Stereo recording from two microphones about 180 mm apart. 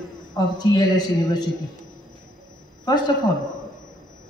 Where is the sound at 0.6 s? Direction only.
25° left (ahead or behind).